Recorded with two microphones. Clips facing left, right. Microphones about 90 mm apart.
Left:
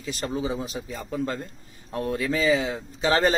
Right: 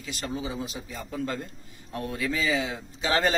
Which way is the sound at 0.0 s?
35° left (ahead or behind).